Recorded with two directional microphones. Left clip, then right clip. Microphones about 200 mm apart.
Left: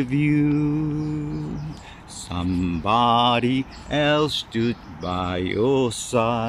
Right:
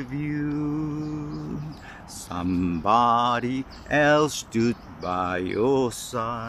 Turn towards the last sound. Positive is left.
turn(degrees=20)  # may be behind; listen again after turning